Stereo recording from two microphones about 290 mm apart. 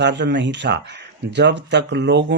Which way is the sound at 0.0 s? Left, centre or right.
Right.